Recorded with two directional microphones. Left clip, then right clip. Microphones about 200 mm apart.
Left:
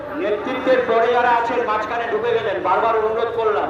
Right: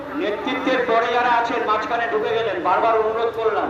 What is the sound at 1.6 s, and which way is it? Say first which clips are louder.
A man's voice: even; 25° left (ahead or behind).